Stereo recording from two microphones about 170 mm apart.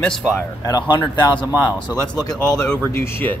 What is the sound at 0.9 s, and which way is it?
Speech, 25° left (ahead or behind).